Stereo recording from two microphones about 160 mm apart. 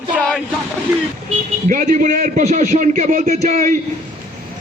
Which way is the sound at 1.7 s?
55° right (ahead or behind).